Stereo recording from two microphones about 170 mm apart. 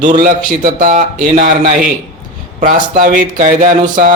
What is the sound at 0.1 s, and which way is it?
Speech, 50° right (ahead or behind).